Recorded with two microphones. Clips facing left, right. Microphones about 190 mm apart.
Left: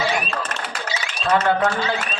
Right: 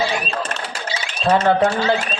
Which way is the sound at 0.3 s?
30° right (ahead or behind).